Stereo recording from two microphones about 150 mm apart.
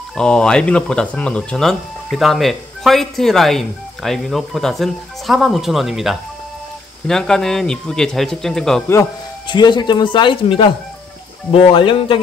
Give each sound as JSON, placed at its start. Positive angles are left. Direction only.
{"t": 0.1, "sound": "speech", "side_deg": 5}
{"t": 9.5, "sound": "speech", "side_deg": 30}